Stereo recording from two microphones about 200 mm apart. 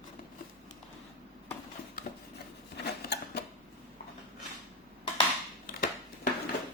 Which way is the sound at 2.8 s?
55° left (ahead or behind).